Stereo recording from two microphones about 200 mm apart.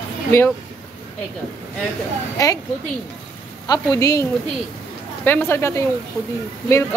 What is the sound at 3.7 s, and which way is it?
A man's voice, 15° left (ahead or behind).